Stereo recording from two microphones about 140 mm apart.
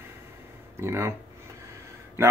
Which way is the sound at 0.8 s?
20° right (ahead or behind).